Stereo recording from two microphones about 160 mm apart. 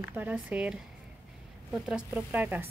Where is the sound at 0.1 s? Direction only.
10° right (ahead or behind).